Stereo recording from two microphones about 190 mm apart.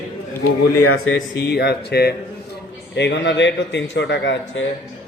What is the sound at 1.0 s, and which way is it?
Speech, 90° left.